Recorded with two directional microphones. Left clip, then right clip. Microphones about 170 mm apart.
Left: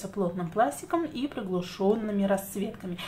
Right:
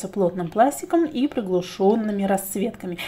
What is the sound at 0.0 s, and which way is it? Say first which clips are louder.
Speech: right 8 dB; 35° right (ahead or behind).